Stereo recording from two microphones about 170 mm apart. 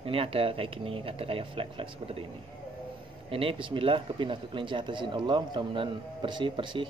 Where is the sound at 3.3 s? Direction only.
30° right (ahead or behind).